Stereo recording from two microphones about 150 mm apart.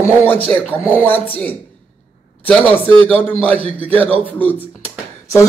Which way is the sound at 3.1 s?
10° left (ahead or behind).